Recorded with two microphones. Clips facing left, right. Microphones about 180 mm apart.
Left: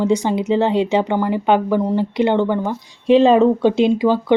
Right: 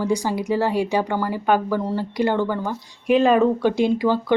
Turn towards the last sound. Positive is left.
turn(degrees=20)  # may be behind; listen again after turning